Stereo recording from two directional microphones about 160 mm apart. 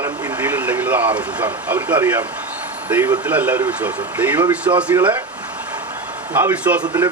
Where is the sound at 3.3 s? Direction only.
10° right (ahead or behind).